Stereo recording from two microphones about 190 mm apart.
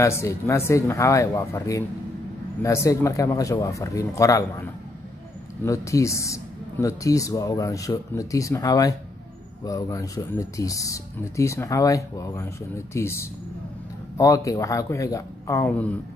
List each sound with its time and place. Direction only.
0.0 s speech: 15° left (ahead or behind)